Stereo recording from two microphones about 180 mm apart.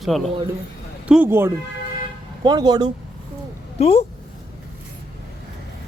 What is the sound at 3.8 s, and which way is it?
Speech, 35° left (ahead or behind).